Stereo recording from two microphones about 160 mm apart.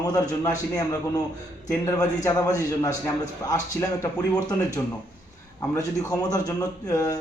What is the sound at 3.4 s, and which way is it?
Speech, 20° left (ahead or behind).